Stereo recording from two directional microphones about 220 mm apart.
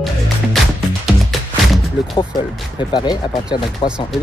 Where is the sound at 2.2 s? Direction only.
20° left (ahead or behind).